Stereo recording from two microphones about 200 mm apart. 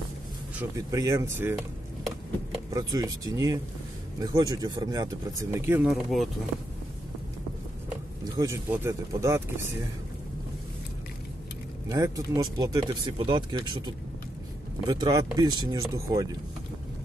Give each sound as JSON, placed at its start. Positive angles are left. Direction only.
{"t": 0.7, "sound": "speech", "side_deg": -15}
{"t": 2.7, "sound": "speech", "side_deg": -15}
{"t": 8.2, "sound": "speech", "side_deg": -15}
{"t": 11.9, "sound": "speech", "side_deg": -15}